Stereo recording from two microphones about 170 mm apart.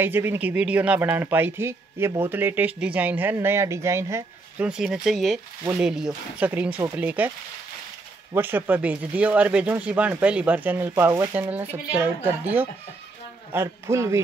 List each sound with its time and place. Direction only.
0.0 s speech: 10° right (ahead or behind)
8.3 s speech: 10° right (ahead or behind)